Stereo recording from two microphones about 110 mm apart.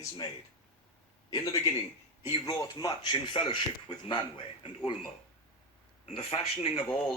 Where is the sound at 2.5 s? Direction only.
35° left (ahead or behind).